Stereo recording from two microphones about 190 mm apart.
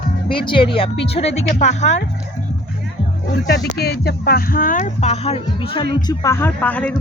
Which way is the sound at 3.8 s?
55° left (ahead or behind).